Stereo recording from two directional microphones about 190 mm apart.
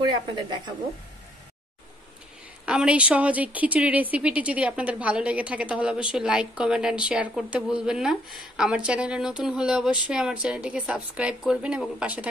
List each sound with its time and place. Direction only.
0.0 s a woman's voice: 20° right (ahead or behind)
2.6 s a woman's voice: 5° right (ahead or behind)